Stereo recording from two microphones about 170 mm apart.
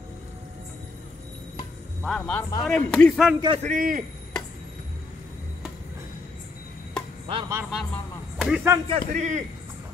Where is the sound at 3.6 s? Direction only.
50° right (ahead or behind).